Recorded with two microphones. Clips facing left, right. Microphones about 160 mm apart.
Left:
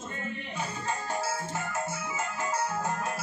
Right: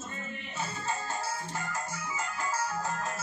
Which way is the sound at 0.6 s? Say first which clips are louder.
Even; 20° left (ahead or behind).